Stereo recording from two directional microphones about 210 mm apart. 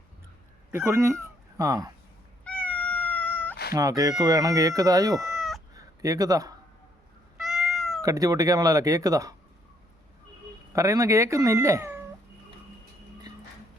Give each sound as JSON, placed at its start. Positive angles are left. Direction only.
{"t": 0.7, "sound": "speech", "side_deg": -15}
{"t": 2.4, "sound": "cat", "side_deg": 5}
{"t": 3.7, "sound": "speech", "side_deg": -15}
{"t": 5.3, "sound": "cat", "side_deg": 0}
{"t": 5.7, "sound": "a sound", "side_deg": -15}
{"t": 7.3, "sound": "cat", "side_deg": 0}
{"t": 8.0, "sound": "speech", "side_deg": -15}
{"t": 10.7, "sound": "speech", "side_deg": -15}